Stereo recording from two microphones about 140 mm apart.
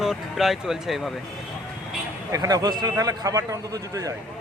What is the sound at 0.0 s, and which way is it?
Speech, centre (ahead or behind).